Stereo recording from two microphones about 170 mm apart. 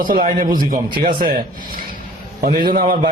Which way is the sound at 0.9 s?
30° right (ahead or behind).